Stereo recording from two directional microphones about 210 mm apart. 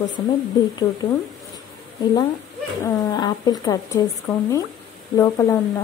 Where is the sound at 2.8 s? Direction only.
15° left (ahead or behind).